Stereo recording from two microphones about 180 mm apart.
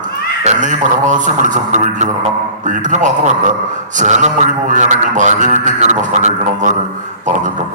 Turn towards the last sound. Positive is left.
turn(degrees=-45)  # may be behind; listen again after turning